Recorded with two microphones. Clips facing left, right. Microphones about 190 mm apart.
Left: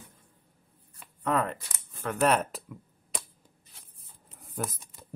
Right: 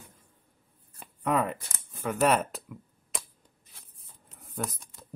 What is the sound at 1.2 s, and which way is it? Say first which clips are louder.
Speech: right 1 dB; 10° right (ahead or behind).